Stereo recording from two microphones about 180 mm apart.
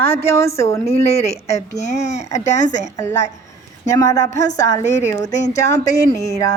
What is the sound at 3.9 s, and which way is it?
Speech, 15° left (ahead or behind).